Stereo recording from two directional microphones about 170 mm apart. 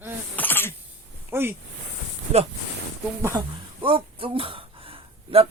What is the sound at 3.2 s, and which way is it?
Speech, 20° right (ahead or behind).